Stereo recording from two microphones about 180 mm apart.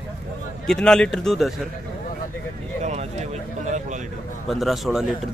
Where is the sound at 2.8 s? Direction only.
40° right (ahead or behind).